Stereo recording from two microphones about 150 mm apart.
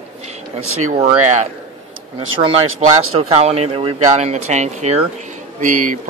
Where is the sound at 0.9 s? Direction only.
40° right (ahead or behind).